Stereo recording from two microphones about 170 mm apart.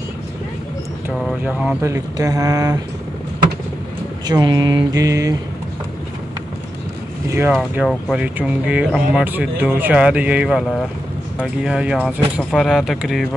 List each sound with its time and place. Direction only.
1.1 s speech: centre (ahead or behind)
1.8 s mantra: 15° right (ahead or behind)
4.3 s mantra: 25° right (ahead or behind)
7.7 s speech: 5° right (ahead or behind)